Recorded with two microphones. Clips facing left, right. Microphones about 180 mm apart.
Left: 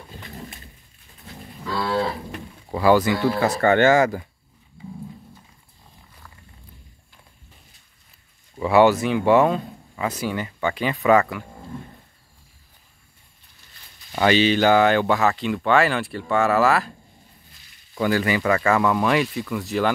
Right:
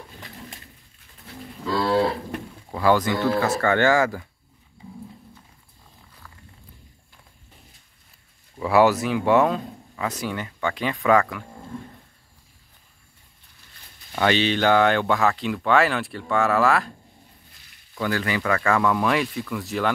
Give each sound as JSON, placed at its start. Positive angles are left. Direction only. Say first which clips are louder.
{"t": 2.7, "sound": "speech", "louder": "left 3 dB", "side_deg": 10}
{"t": 8.5, "sound": "speech", "louder": "left 2 dB", "side_deg": 0}
{"t": 14.1, "sound": "speech", "louder": "left 3 dB", "side_deg": 5}
{"t": 17.9, "sound": "speech", "louder": "left 4 dB", "side_deg": 10}